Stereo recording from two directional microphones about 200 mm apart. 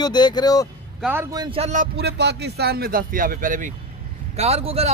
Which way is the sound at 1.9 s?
55° right (ahead or behind).